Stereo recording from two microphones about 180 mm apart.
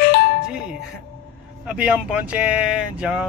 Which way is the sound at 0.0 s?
55° left (ahead or behind).